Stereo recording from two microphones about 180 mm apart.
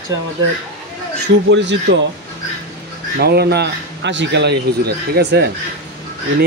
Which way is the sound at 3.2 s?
60° right (ahead or behind).